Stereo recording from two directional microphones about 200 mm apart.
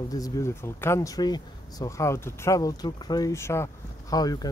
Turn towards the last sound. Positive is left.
turn(degrees=20)  # may be behind; listen again after turning